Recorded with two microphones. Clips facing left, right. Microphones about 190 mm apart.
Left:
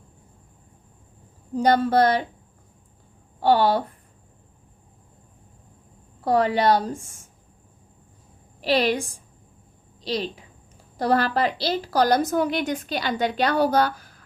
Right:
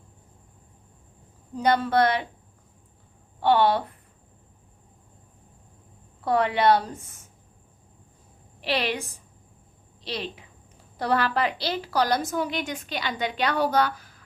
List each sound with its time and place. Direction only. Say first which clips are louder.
1.5 s a woman's voice: left 3 dB; 40° left (ahead or behind)
3.4 s a woman's voice: left 2 dB; 40° left (ahead or behind)
6.2 s a woman's voice: left 2 dB; 40° left (ahead or behind)
8.6 s a woman's voice: left 6 dB; 40° left (ahead or behind)